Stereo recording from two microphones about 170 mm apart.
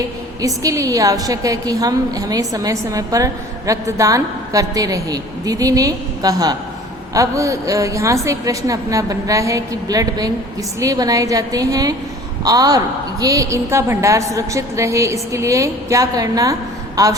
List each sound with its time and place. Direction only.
0.4 s a woman's voice: 20° right (ahead or behind)